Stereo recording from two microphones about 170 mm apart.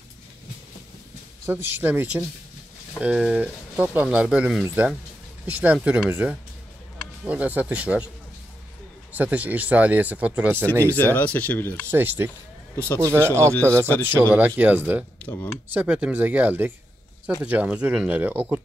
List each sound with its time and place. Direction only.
1.4 s speech: 15° right (ahead or behind)
9.1 s speech: 10° right (ahead or behind)
10.9 s speech: 10° left (ahead or behind)
11.9 s speech: 10° right (ahead or behind)
12.7 s a man's voice: 10° left (ahead or behind)
13.0 s speech: 15° right (ahead or behind)
15.2 s speech: 15° left (ahead or behind)
15.7 s speech: 10° right (ahead or behind)